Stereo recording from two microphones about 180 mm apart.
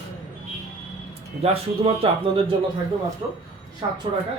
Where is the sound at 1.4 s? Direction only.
30° right (ahead or behind).